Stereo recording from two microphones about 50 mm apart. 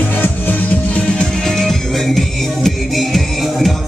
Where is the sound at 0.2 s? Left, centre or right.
Left.